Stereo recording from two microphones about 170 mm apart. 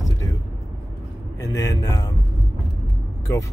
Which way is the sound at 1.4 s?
20° left (ahead or behind).